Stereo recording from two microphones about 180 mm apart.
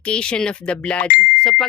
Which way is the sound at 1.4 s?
5° left (ahead or behind).